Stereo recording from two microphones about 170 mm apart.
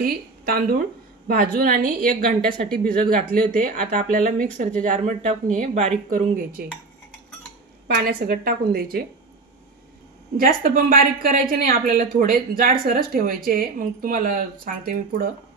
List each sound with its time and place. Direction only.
0.0 s a woman's voice: 60° right (ahead or behind)
7.9 s a woman's voice: 60° right (ahead or behind)
10.3 s a woman's voice: 55° right (ahead or behind)